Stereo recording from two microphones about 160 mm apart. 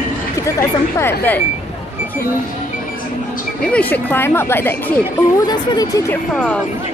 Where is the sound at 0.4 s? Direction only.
15° left (ahead or behind).